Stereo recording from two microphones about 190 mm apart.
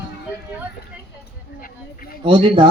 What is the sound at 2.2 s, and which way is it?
Speech, 25° right (ahead or behind).